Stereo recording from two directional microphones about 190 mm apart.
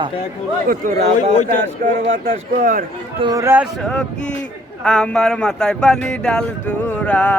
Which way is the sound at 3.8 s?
5° left (ahead or behind).